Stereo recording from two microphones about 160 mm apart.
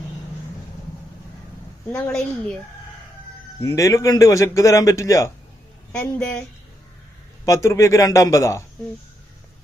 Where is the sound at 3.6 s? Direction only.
20° left (ahead or behind).